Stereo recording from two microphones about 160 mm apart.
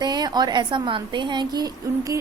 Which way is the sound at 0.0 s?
25° right (ahead or behind).